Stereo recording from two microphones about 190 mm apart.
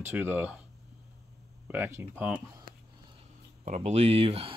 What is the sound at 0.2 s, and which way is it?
Speech, 10° right (ahead or behind).